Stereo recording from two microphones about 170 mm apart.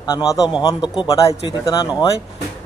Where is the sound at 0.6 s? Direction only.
25° left (ahead or behind).